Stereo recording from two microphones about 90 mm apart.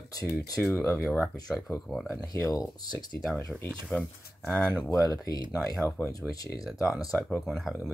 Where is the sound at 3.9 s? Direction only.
15° left (ahead or behind).